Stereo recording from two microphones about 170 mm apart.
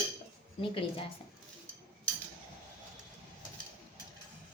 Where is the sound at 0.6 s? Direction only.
30° left (ahead or behind).